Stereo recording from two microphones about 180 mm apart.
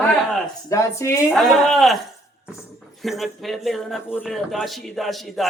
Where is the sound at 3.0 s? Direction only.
Centre (ahead or behind).